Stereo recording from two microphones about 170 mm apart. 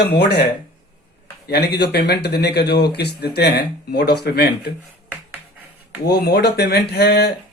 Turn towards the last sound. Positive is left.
turn(degrees=70)  # may be behind; listen again after turning